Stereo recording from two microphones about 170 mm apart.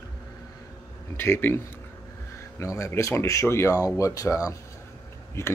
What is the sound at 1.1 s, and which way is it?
Speech, 10° left (ahead or behind).